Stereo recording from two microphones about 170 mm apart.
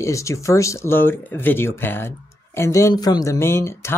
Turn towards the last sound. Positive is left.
turn(degrees=15)  # may be behind; listen again after turning